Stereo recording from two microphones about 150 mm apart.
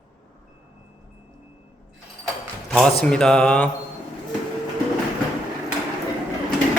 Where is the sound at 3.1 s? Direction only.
5° left (ahead or behind).